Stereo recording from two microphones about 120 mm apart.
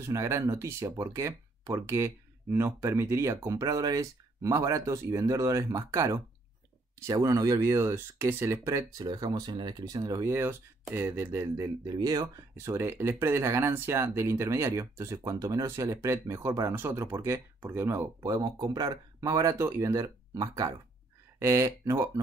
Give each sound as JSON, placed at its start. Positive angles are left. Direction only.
{"t": 0.0, "sound": "speech", "side_deg": -25}
{"t": 12.5, "sound": "speech", "side_deg": -20}